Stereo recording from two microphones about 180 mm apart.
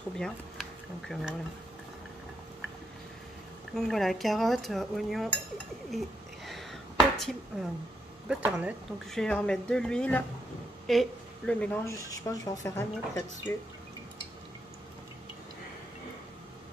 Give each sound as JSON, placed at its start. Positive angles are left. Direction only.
{"t": 0.2, "sound": "speech", "side_deg": 0}
{"t": 3.7, "sound": "dishes", "side_deg": 0}
{"t": 5.9, "sound": "a sound", "side_deg": 0}
{"t": 8.3, "sound": "speech", "side_deg": -10}
{"t": 9.1, "sound": "dishes", "side_deg": 5}
{"t": 10.9, "sound": "speech", "side_deg": 0}